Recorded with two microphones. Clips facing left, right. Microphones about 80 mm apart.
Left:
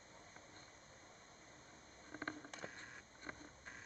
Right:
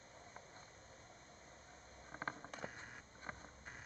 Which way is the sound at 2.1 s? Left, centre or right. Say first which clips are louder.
Right 1 dB; centre.